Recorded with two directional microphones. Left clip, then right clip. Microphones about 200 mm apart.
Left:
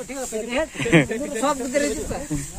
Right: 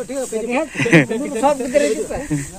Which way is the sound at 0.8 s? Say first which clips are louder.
Right 5 dB; centre (ahead or behind).